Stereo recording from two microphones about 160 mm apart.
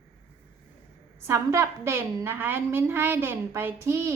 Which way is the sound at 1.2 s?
15° right (ahead or behind).